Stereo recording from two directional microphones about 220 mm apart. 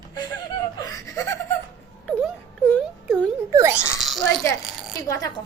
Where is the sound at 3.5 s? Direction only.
10° right (ahead or behind).